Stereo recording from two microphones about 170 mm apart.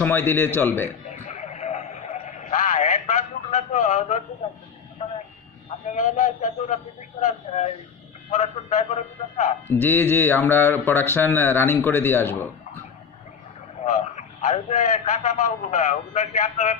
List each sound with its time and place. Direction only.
0.0 s a man's voice: 10° left (ahead or behind)
1.2 s radio: 40° left (ahead or behind)
5.9 s a man's voice: 45° left (ahead or behind)
9.7 s a man's voice: 10° left (ahead or behind)
13.8 s a man's voice: 45° left (ahead or behind)